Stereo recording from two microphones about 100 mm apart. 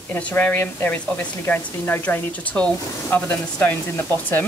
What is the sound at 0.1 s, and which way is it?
A woman's voice, 20° left (ahead or behind).